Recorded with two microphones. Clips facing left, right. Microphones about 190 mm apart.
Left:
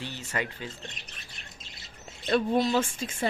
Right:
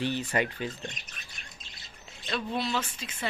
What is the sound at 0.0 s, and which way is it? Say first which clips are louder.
Speech: right 5 dB; 15° right (ahead or behind).